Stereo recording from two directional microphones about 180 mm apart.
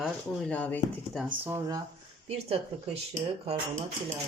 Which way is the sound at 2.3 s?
35° right (ahead or behind).